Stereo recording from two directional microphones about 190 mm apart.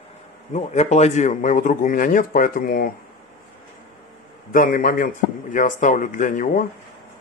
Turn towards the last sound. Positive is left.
turn(degrees=45)  # may be behind; listen again after turning